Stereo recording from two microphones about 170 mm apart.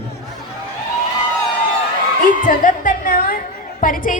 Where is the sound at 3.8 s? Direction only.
55° left (ahead or behind).